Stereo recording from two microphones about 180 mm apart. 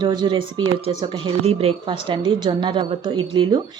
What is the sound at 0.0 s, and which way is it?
Speech, 25° right (ahead or behind).